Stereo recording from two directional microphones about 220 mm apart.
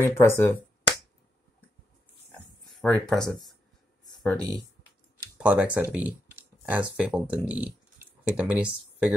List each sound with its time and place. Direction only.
0.0 s speech: 10° left (ahead or behind)
2.8 s speech: 5° left (ahead or behind)
4.1 s a sound: centre (ahead or behind)
5.4 s speech: 5° right (ahead or behind)